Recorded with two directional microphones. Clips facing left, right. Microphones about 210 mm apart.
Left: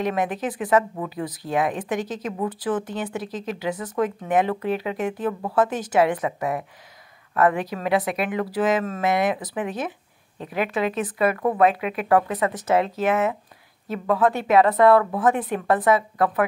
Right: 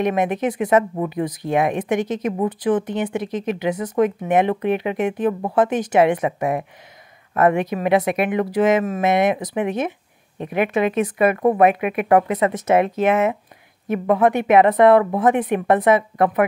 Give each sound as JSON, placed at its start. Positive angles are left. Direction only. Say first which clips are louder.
{"t": 0.0, "sound": "speech", "louder": "right 5 dB", "side_deg": -20}